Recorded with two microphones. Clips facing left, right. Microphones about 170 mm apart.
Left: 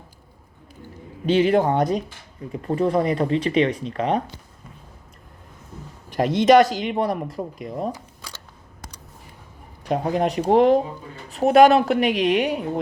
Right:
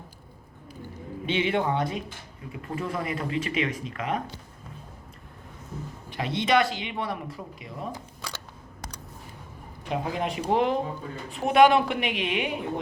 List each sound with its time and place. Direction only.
1.3 s speech: 40° left (ahead or behind)
6.1 s speech: 45° left (ahead or behind)
9.9 s speech: 40° left (ahead or behind)